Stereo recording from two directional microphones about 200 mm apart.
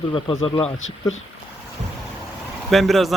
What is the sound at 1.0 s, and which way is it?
Speech, 20° left (ahead or behind).